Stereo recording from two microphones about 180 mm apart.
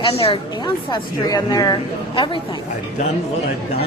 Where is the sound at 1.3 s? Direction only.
20° left (ahead or behind).